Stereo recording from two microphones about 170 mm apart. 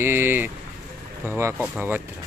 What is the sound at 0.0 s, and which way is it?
Speech, 15° right (ahead or behind).